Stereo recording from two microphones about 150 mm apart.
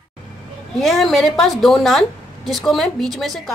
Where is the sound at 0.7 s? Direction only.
Centre (ahead or behind).